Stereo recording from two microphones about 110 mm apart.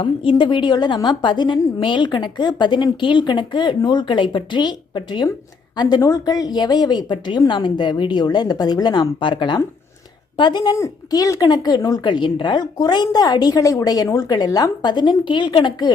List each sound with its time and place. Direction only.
0.0 s a woman's voice: 50° left (ahead or behind)